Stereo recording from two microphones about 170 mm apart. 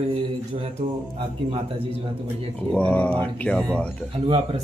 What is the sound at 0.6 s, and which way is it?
Speech, 35° right (ahead or behind).